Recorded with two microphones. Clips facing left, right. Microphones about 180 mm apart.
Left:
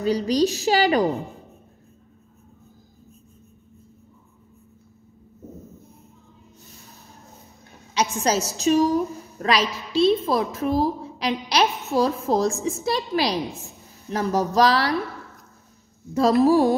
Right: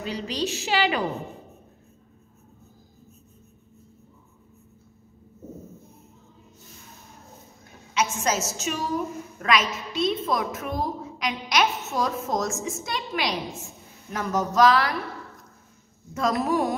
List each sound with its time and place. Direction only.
0.0 s a woman's voice: 40° left (ahead or behind)
7.9 s a woman's voice: 35° left (ahead or behind)
16.1 s a woman's voice: 30° left (ahead or behind)